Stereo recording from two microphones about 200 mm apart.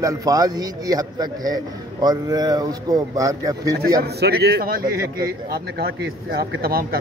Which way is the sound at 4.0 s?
50° right (ahead or behind).